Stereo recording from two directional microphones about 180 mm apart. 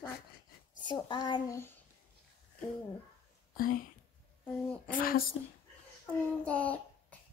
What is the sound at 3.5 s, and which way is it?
Speech, 50° left (ahead or behind).